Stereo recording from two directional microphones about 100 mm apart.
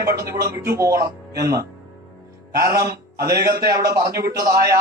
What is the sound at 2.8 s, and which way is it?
A man's voice, 30° right (ahead or behind).